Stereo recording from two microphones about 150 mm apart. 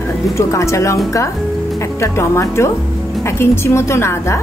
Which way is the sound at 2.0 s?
20° left (ahead or behind).